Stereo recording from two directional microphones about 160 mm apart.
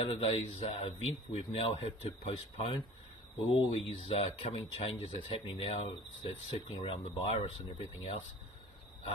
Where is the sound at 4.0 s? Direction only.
35° left (ahead or behind).